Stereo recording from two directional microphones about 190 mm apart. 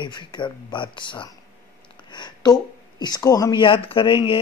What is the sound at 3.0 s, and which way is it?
Speech, 20° left (ahead or behind).